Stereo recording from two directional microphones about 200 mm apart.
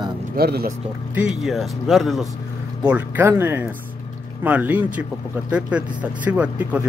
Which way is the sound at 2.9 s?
10° right (ahead or behind).